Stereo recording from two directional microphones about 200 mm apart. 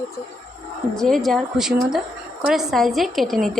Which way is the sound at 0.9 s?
Centre (ahead or behind).